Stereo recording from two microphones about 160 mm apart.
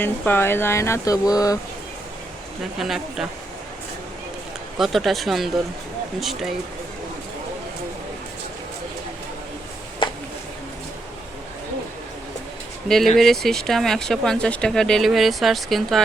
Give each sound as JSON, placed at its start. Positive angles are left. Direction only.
{"t": 0.0, "sound": "speech", "side_deg": 15}
{"t": 2.7, "sound": "speech", "side_deg": 0}
{"t": 4.8, "sound": "speech", "side_deg": 0}
{"t": 10.0, "sound": "a sound", "side_deg": 30}
{"t": 12.9, "sound": "speech", "side_deg": 0}